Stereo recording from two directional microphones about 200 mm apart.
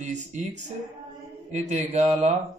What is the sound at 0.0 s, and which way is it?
Speech, 35° right (ahead or behind).